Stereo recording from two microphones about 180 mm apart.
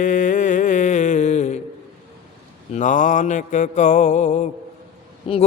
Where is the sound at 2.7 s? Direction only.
45° left (ahead or behind).